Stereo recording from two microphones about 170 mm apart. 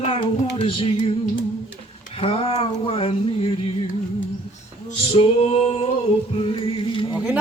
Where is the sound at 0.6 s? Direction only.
30° left (ahead or behind).